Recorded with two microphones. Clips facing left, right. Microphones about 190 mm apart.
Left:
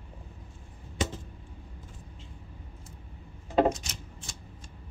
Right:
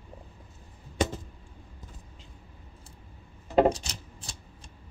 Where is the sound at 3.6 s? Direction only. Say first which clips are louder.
Right 3 dB; 35° right (ahead or behind).